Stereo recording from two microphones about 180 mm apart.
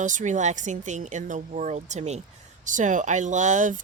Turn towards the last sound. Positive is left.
turn(degrees=-45)  # may be behind; listen again after turning